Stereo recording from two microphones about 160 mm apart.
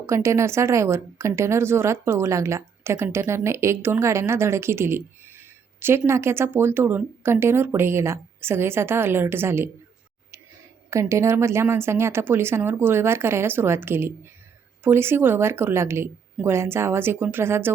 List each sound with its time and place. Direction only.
0.0 s a woman's voice: 20° right (ahead or behind)
10.9 s a woman's voice: 20° right (ahead or behind)